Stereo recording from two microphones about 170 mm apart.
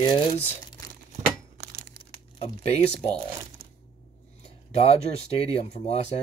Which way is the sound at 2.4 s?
40° left (ahead or behind).